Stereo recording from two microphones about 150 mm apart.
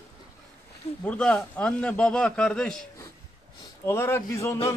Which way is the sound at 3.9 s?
15° left (ahead or behind).